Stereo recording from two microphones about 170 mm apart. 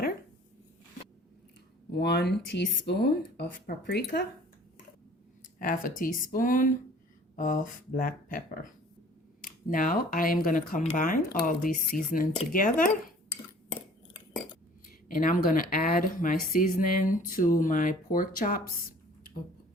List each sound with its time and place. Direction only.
1.9 s speech: 75° left (ahead or behind)
5.5 s speech: 55° left (ahead or behind)
15.0 s speech: 55° left (ahead or behind)